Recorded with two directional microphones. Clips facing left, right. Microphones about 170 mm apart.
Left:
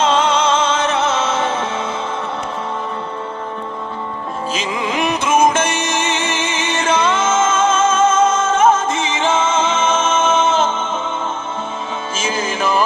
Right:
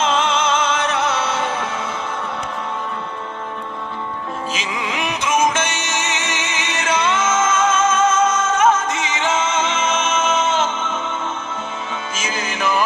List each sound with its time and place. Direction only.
0.0 s music: 35° left (ahead or behind)
4.5 s music: 45° left (ahead or behind)
5.5 s music: 35° left (ahead or behind)
12.1 s music: 30° left (ahead or behind)